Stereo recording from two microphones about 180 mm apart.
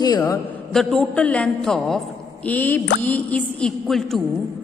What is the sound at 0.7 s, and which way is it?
A woman's voice, centre (ahead or behind).